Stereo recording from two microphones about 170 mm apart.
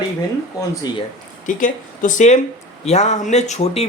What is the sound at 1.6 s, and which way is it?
Speech, 50° left (ahead or behind).